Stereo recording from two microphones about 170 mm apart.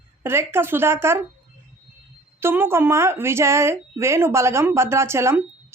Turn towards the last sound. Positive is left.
turn(degrees=-15)  # may be behind; listen again after turning